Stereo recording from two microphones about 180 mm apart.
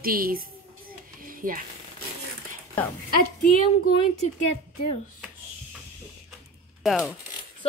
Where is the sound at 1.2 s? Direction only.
50° right (ahead or behind).